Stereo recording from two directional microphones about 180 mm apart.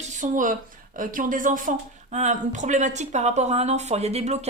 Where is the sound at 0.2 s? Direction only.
45° right (ahead or behind).